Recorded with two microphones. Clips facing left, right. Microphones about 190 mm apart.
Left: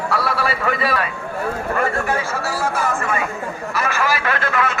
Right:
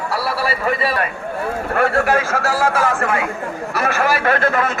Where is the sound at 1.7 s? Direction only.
70° right (ahead or behind).